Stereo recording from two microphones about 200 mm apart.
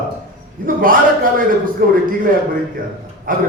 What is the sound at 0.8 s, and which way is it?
A man's voice, 45° right (ahead or behind).